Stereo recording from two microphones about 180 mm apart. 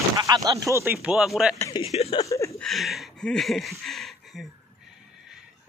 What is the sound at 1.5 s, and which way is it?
Speech, 20° left (ahead or behind).